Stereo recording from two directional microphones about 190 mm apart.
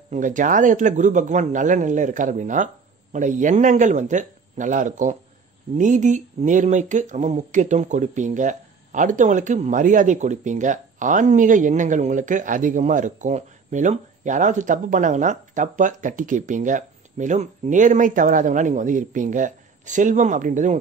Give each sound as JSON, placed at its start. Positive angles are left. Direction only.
{"t": 0.1, "sound": "speech", "side_deg": -45}